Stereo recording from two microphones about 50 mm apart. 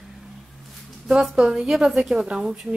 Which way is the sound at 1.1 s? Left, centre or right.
Centre.